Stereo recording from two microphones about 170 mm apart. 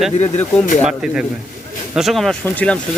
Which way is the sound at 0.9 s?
5° right (ahead or behind).